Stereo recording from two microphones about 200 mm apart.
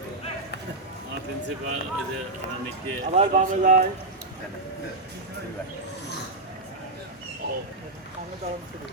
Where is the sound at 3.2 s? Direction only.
40° right (ahead or behind).